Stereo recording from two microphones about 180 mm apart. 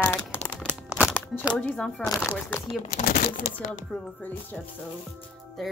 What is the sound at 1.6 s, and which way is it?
Speech, 5° left (ahead or behind).